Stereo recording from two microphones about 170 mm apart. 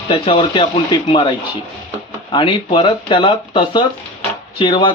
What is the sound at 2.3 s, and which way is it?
Speech, 30° left (ahead or behind).